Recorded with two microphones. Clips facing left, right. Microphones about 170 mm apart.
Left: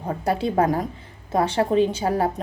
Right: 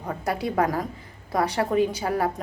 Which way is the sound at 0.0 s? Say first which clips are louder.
Left 4 dB; 30° left (ahead or behind).